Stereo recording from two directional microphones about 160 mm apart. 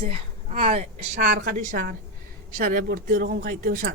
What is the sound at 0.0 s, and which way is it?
A woman's voice, 35° right (ahead or behind).